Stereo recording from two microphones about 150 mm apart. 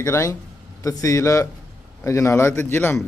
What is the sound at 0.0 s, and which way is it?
A man's voice, 20° left (ahead or behind).